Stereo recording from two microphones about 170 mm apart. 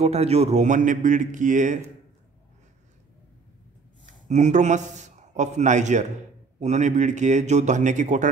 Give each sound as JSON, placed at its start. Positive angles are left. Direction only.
{"t": 0.0, "sound": "a man's voice", "side_deg": -40}
{"t": 4.0, "sound": "a man's voice", "side_deg": -45}